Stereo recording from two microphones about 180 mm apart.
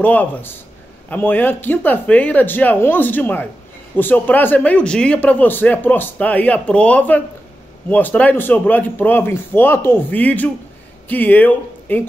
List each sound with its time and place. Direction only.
0.0 s speech: 10° left (ahead or behind)